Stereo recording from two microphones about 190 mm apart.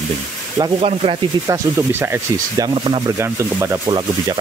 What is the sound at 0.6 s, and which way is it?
Speech, 30° right (ahead or behind).